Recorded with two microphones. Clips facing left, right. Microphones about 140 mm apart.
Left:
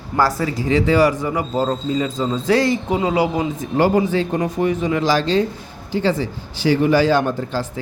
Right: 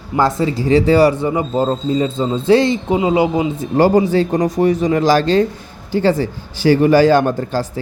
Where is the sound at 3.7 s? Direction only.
35° right (ahead or behind).